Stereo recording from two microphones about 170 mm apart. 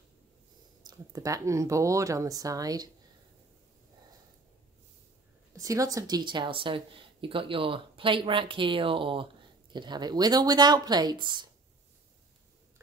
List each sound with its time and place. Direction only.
0.8 s a woman's voice: 20° right (ahead or behind)
5.6 s a woman's voice: 20° right (ahead or behind)